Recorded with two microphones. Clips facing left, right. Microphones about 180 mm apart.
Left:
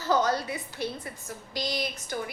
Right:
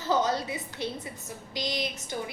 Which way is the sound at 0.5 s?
20° right (ahead or behind).